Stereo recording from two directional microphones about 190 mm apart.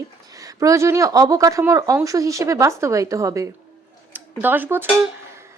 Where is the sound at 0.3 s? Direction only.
15° right (ahead or behind).